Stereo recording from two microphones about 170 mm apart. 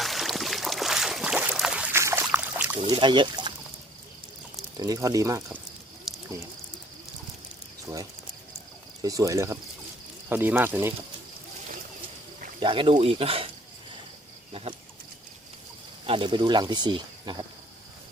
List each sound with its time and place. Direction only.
0.0 s boat: centre (ahead or behind)
2.8 s speech: 30° right (ahead or behind)
4.8 s speech: 20° right (ahead or behind)
6.1 s snake: centre (ahead or behind)
9.0 s speech: 20° right (ahead or behind)
12.5 s speech: 30° right (ahead or behind)
14.5 s a sound: 35° right (ahead or behind)
16.0 s speech: 30° right (ahead or behind)